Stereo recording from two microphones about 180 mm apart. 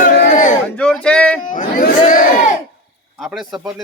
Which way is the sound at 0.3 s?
45° left (ahead or behind).